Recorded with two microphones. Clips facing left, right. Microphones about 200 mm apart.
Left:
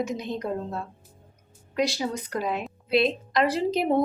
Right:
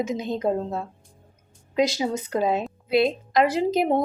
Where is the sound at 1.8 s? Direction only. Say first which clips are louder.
Right 3 dB; 20° right (ahead or behind).